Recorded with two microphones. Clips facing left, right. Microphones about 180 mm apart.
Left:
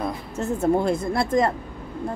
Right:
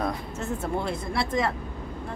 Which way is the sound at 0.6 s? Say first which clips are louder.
Left 11 dB; 45° left (ahead or behind).